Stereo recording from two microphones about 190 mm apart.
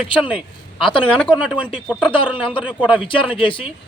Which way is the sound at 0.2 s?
5° right (ahead or behind).